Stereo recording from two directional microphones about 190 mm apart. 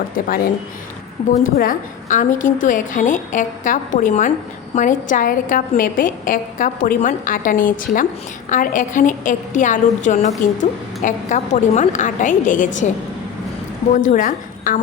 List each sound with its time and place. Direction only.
1.3 s a woman's voice: 45° left (ahead or behind)
13.9 s a woman's voice: 40° left (ahead or behind)